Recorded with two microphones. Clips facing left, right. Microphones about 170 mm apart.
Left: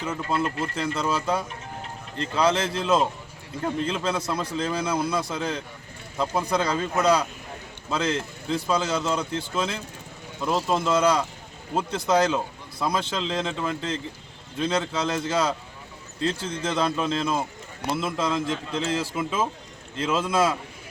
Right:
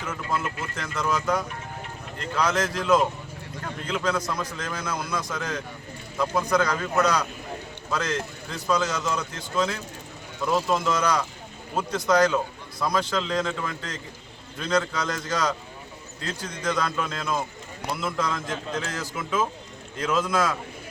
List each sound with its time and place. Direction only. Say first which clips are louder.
0.0 s a man's voice: left 3 dB; 30° left (ahead or behind)